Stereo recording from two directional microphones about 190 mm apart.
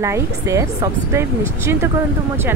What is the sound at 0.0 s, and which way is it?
Speech, 15° right (ahead or behind).